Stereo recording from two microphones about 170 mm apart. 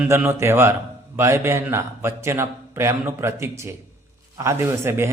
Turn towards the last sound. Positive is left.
turn(degrees=-15)  # may be behind; listen again after turning